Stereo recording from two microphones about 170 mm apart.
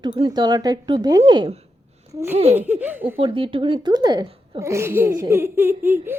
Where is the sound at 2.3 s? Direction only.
35° right (ahead or behind).